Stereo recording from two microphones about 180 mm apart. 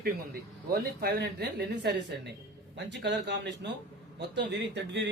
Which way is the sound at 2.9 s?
75° right (ahead or behind).